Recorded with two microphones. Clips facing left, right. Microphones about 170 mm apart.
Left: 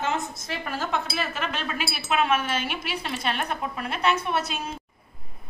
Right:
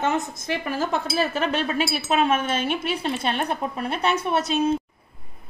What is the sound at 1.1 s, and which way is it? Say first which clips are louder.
Speech: right 7 dB; 35° right (ahead or behind).